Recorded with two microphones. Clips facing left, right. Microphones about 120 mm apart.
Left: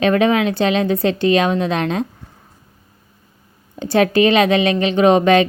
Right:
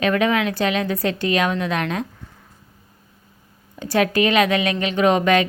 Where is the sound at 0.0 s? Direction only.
25° left (ahead or behind).